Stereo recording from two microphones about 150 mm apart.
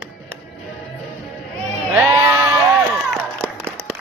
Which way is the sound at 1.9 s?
15° right (ahead or behind).